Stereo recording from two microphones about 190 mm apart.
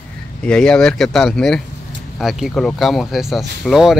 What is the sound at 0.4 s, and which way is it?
Speech, 5° left (ahead or behind).